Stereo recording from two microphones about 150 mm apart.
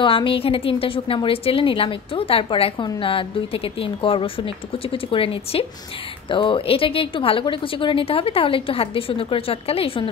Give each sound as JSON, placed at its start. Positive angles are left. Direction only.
{"t": 0.0, "sound": "speech", "side_deg": 35}